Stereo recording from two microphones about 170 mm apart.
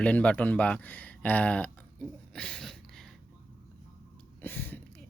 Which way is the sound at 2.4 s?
5° left (ahead or behind).